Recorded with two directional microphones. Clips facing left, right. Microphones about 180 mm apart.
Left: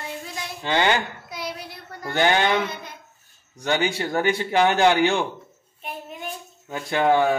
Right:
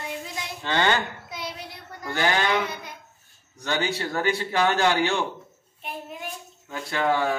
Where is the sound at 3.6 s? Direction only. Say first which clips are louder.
Left 3 dB; 15° left (ahead or behind).